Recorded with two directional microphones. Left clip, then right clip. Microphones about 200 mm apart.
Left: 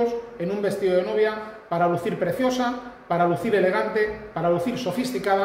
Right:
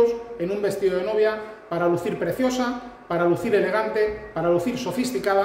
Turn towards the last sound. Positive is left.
turn(degrees=-20)  # may be behind; listen again after turning